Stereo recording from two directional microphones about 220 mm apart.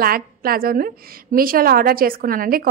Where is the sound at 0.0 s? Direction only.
40° right (ahead or behind).